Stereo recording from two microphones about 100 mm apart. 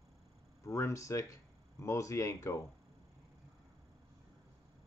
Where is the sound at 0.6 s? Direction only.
30° left (ahead or behind).